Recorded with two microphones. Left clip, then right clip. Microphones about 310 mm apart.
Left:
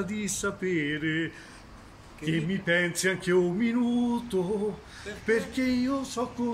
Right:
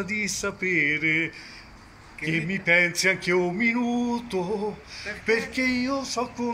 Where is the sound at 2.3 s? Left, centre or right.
Centre.